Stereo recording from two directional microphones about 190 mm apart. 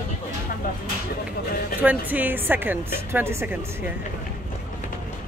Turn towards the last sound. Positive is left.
turn(degrees=-10)  # may be behind; listen again after turning